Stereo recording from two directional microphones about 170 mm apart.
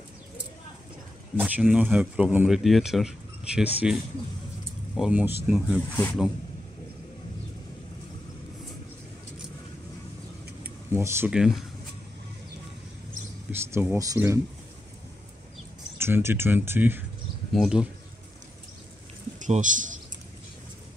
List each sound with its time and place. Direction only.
1.3 s speech: 10° right (ahead or behind)
10.6 s a sound: 15° right (ahead or behind)
11.3 s speech: 5° right (ahead or behind)
13.5 s speech: 15° right (ahead or behind)
16.0 s speech: 15° right (ahead or behind)
19.4 s a man's voice: 50° right (ahead or behind)